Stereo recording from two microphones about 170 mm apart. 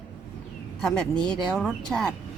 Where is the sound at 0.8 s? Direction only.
5° left (ahead or behind).